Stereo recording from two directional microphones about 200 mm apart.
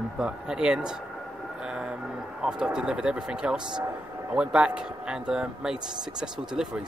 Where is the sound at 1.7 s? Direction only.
5° right (ahead or behind).